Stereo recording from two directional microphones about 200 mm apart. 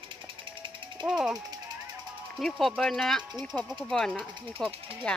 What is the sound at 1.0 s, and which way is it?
Speech, centre (ahead or behind).